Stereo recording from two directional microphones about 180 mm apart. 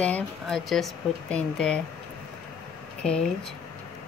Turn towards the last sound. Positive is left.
turn(degrees=5)  # may be behind; listen again after turning